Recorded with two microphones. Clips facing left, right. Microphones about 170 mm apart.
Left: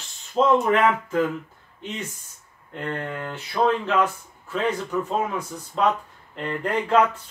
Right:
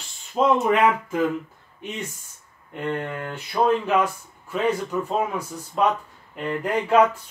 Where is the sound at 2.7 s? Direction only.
10° right (ahead or behind).